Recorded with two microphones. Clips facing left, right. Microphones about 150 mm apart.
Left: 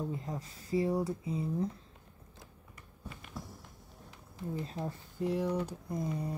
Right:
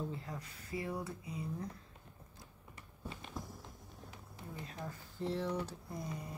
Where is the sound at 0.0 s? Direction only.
20° left (ahead or behind).